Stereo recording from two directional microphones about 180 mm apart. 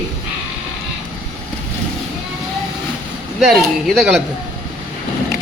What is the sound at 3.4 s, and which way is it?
Speech, centre (ahead or behind).